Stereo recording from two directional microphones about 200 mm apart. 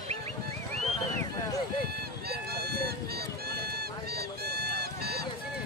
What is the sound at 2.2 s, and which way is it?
Run, 50° right (ahead or behind).